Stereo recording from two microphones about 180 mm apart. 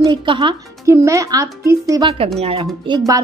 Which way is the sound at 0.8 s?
15° right (ahead or behind).